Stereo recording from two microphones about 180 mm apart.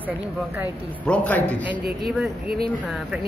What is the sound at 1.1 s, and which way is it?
Speech, 10° left (ahead or behind).